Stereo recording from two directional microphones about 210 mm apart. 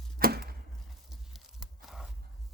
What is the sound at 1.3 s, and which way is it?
Tearing, centre (ahead or behind).